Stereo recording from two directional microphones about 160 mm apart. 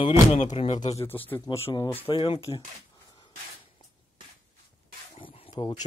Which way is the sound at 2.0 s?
35° left (ahead or behind).